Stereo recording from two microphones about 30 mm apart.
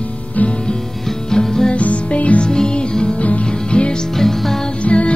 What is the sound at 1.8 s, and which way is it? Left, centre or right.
Music, left.